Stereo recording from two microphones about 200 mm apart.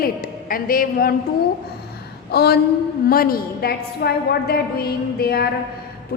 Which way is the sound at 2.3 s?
55° left (ahead or behind).